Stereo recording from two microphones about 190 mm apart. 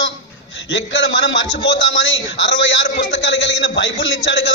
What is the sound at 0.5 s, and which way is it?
A man's voice, 70° left (ahead or behind).